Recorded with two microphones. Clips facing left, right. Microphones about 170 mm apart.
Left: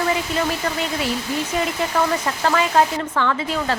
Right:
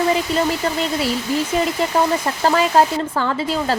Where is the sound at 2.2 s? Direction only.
35° right (ahead or behind).